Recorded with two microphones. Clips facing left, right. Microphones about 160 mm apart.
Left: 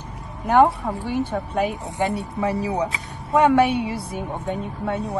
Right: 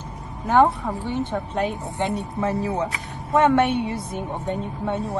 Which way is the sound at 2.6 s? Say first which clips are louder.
Left 1 dB; 15° left (ahead or behind).